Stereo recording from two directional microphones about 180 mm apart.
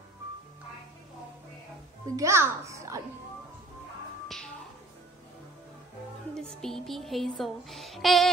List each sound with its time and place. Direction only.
2.1 s a child's voice: 15° right (ahead or behind)
6.3 s music: 5° left (ahead or behind)